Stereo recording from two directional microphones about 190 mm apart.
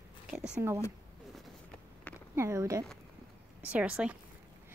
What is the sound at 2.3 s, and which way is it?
A woman's voice, 15° right (ahead or behind).